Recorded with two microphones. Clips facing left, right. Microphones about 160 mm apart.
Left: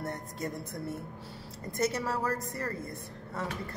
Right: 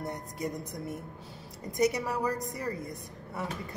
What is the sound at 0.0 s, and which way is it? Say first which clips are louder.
A woman's voice: right 1 dB; 15° right (ahead or behind).